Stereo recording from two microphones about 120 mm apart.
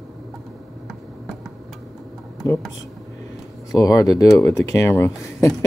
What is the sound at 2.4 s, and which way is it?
Speech, 30° left (ahead or behind).